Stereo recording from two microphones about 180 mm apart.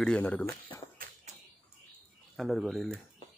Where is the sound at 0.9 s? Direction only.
50° right (ahead or behind).